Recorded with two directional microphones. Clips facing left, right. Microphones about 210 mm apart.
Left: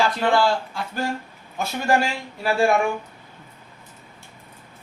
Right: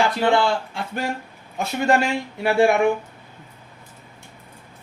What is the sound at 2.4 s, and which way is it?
Speech, 20° right (ahead or behind).